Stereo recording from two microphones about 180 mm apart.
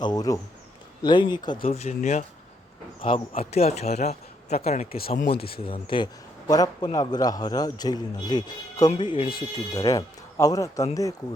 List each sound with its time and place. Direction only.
0.0 s a man's voice: 20° left (ahead or behind)
1.6 s speech: 35° left (ahead or behind)
4.9 s speech: 55° left (ahead or behind)
5.5 s a man's voice: 30° left (ahead or behind)